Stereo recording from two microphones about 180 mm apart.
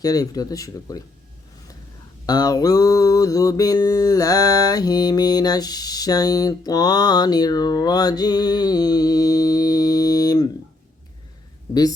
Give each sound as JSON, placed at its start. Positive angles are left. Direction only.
{"t": 0.0, "sound": "mantra", "side_deg": 20}
{"t": 2.2, "sound": "mantra", "side_deg": 20}
{"t": 11.7, "sound": "mantra", "side_deg": 20}